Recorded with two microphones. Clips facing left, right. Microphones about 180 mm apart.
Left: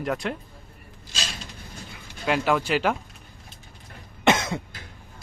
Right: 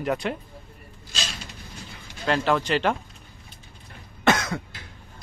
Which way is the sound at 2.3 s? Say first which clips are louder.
Even; 10° left (ahead or behind).